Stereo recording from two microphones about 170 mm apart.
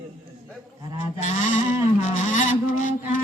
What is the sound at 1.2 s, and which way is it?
Sheep, 45° left (ahead or behind).